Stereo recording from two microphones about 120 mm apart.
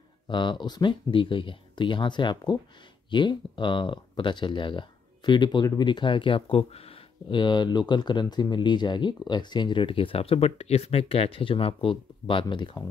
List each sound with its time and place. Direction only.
0.3 s speech: 40° left (ahead or behind)